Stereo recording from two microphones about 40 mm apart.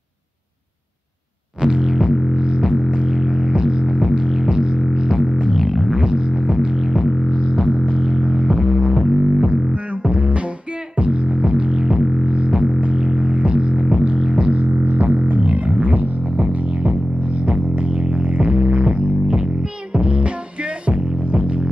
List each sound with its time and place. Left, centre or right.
1.6 s music: centre
3.1 s music: centre
6.9 s music: centre
8.8 s music: right
9.1 s music: centre
9.7 s music: right
12.0 s music: centre
12.3 s music: right
14.6 s music: right